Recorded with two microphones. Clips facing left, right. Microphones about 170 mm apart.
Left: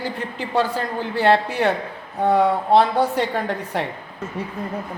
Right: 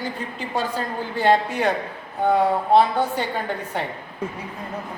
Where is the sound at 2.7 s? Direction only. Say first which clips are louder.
Left 1 dB; 75° left (ahead or behind).